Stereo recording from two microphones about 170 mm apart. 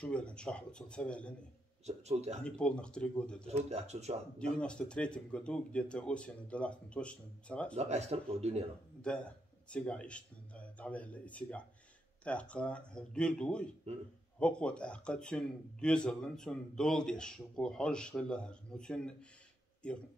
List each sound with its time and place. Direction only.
0.0 s speech: 5° left (ahead or behind)
1.9 s speech: 40° right (ahead or behind)
2.4 s speech: 5° left (ahead or behind)
3.4 s speech: 40° right (ahead or behind)
4.6 s speech: 5° left (ahead or behind)
7.7 s speech: 40° right (ahead or behind)
9.0 s speech: 5° left (ahead or behind)
13.9 s speech: 40° right (ahead or behind)
14.4 s speech: 5° left (ahead or behind)